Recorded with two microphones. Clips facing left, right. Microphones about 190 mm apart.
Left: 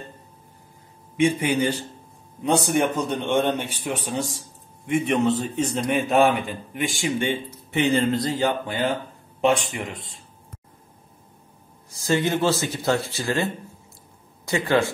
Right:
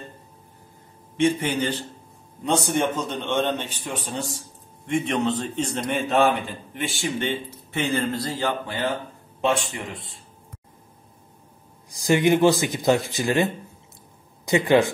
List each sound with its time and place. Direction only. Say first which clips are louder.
1.1 s speech: left 1 dB; 10° left (ahead or behind)
11.9 s speech: right 4 dB; 15° right (ahead or behind)